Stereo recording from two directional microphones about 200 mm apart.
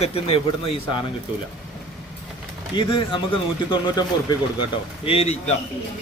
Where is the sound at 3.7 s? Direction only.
20° left (ahead or behind).